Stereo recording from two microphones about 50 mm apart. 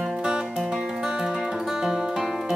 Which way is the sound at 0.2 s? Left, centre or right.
Centre.